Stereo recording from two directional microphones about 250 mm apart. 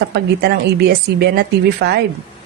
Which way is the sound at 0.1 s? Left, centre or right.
Right.